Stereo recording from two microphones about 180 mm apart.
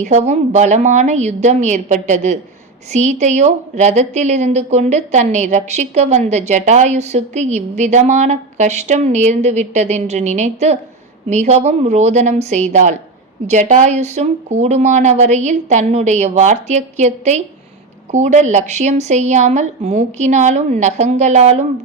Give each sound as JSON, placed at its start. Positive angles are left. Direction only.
{"t": 0.0, "sound": "speech", "side_deg": -40}